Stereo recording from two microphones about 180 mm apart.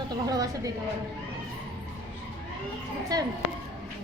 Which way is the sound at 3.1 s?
20° right (ahead or behind).